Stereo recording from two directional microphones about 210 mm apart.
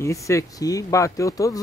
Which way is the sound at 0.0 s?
15° left (ahead or behind).